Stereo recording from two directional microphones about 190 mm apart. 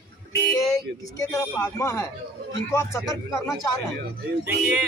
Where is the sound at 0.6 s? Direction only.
15° left (ahead or behind).